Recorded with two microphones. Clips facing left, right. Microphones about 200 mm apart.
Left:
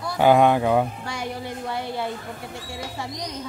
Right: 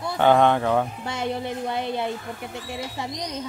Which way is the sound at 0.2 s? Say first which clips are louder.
Left 1 dB; 10° left (ahead or behind).